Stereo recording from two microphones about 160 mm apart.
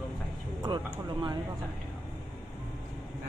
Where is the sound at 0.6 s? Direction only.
25° right (ahead or behind).